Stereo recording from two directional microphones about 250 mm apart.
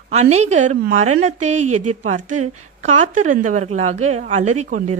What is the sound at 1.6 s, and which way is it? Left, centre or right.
Speech, right.